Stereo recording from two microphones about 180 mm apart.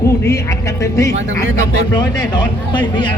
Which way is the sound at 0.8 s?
15° left (ahead or behind).